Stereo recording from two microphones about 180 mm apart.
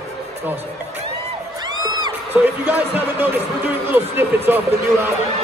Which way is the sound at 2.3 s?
10° right (ahead or behind).